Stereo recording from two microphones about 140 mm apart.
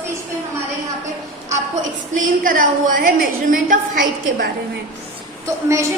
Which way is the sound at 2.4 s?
80° right.